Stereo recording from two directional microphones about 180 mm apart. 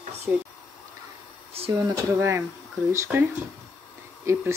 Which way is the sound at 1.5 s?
30° right (ahead or behind).